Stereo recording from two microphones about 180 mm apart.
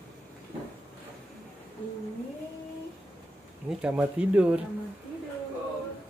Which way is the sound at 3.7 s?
5° right (ahead or behind).